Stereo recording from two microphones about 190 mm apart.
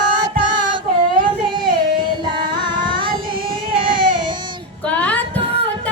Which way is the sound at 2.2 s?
25° right (ahead or behind).